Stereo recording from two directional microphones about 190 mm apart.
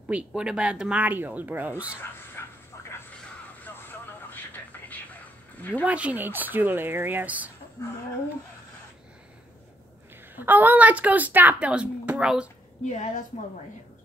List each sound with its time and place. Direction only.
0.1 s speech: 5° right (ahead or behind)
2.4 s a sound: 15° left (ahead or behind)
3.5 s vehicle: 10° left (ahead or behind)
5.9 s speech: 5° right (ahead or behind)
10.3 s speech: 10° right (ahead or behind)
12.8 s a woman's voice: 40° left (ahead or behind)